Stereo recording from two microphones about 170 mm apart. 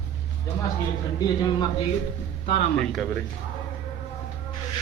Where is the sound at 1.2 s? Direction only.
25° left (ahead or behind).